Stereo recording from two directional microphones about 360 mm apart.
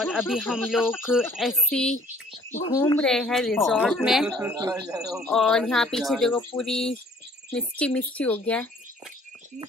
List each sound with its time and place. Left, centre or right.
0.0 s speech: centre